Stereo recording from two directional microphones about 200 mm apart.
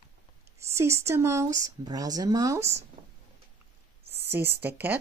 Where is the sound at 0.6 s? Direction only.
15° right (ahead or behind).